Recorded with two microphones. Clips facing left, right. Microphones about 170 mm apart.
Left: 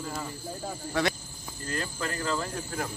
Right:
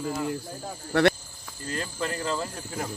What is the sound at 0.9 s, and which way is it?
Speech, 65° right (ahead or behind).